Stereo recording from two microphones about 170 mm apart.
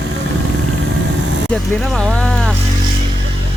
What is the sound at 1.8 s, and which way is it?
Speech, centre (ahead or behind).